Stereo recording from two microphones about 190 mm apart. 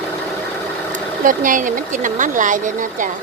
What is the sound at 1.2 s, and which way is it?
Speech, 45° right (ahead or behind).